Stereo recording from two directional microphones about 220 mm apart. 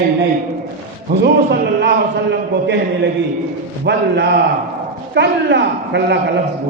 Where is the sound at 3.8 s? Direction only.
50° right (ahead or behind).